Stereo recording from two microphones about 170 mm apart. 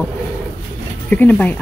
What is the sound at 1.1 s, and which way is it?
Speech, 10° left (ahead or behind).